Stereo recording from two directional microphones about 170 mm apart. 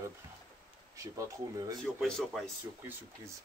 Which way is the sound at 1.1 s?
20° right (ahead or behind).